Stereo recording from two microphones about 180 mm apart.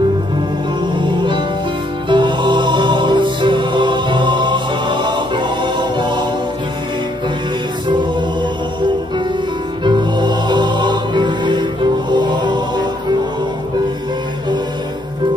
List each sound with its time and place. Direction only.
0.9 s music: 25° right (ahead or behind)
9.8 s music: 25° right (ahead or behind)